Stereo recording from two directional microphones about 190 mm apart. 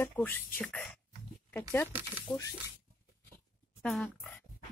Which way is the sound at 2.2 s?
15° left (ahead or behind).